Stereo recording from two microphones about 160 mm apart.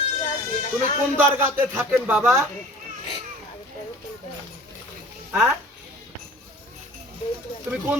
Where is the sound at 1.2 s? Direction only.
15° right (ahead or behind).